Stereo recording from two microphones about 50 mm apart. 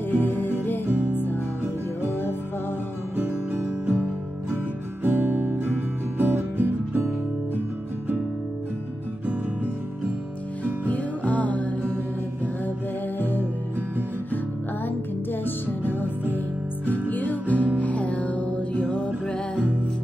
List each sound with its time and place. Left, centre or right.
0.1 s music: left
3.2 s music: right
5.0 s guitar: right
10.6 s music: left
13.2 s music: left
15.4 s music: left